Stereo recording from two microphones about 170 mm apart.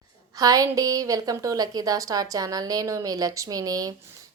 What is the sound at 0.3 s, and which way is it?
A woman's voice, 20° right (ahead or behind).